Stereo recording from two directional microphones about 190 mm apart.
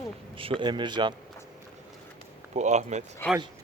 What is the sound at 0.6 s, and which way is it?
Speech, 25° right (ahead or behind).